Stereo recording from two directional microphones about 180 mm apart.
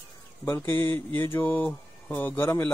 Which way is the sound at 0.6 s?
25° right (ahead or behind).